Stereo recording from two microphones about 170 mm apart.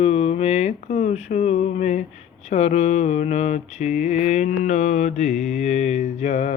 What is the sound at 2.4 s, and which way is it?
Mantra, 40° left (ahead or behind).